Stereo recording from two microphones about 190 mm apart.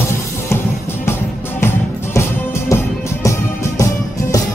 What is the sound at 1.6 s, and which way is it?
Music, 15° left (ahead or behind).